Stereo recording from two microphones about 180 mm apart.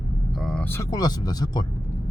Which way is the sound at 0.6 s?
15° left (ahead or behind).